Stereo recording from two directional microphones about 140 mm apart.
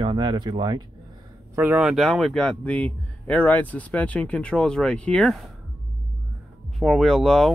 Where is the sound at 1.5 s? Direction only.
15° right (ahead or behind).